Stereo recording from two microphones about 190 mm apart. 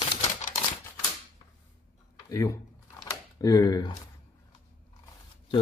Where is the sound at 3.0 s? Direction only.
20° left (ahead or behind).